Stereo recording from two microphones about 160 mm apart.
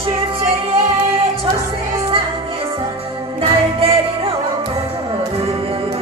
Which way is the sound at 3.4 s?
35° right (ahead or behind).